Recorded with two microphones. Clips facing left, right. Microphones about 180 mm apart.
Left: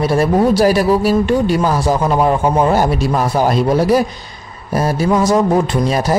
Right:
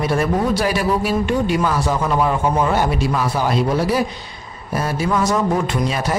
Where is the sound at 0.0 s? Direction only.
35° left (ahead or behind).